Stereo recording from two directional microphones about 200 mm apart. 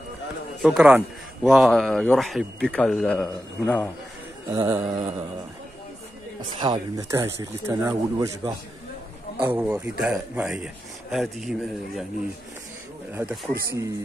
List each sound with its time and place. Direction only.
0.6 s speech: 5° right (ahead or behind)
4.5 s a sound: 20° right (ahead or behind)
6.6 s speech: 20° right (ahead or behind); by 12.1 s centre (ahead or behind)
13.1 s speech: 5° right (ahead or behind)